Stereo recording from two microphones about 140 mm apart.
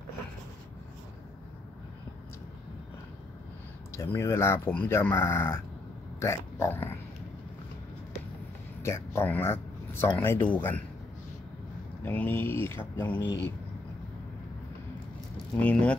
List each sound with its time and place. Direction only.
3.9 s speech: 20° left (ahead or behind)
8.8 s speech: 20° left (ahead or behind)
12.0 s speech: 15° left (ahead or behind)
15.5 s speech: 10° left (ahead or behind)